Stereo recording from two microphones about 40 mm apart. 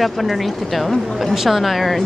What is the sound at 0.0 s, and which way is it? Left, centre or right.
Speech, centre.